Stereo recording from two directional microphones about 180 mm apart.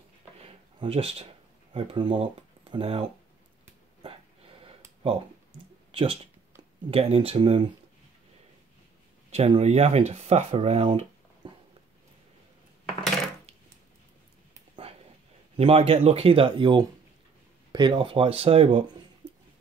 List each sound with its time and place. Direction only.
0.4 s a sound: 30° right (ahead or behind)
2.1 s speech: 30° right (ahead or behind)
4.6 s a sound: 30° right (ahead or behind)
6.9 s speech: 35° right (ahead or behind)
9.3 s speech: 35° right (ahead or behind)
15.5 s speech: 35° right (ahead or behind)